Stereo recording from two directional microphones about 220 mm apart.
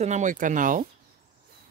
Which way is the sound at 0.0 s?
35° right (ahead or behind).